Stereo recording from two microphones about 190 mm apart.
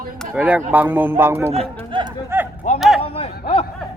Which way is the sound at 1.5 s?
30° right (ahead or behind).